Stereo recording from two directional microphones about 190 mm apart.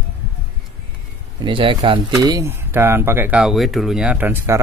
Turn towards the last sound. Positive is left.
turn(degrees=-10)  # may be behind; listen again after turning